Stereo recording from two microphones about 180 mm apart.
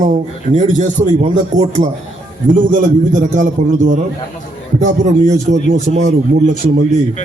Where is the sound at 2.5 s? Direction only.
45° right (ahead or behind).